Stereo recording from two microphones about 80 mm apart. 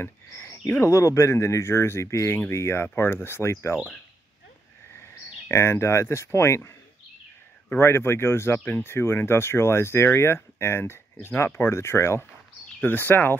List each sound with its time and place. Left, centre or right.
0.0 s speech: left
5.5 s speech: left
7.7 s speech: left
12.8 s speech: left